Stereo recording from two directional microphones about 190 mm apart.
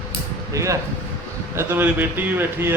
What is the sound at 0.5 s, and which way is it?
A man's voice, 15° right (ahead or behind).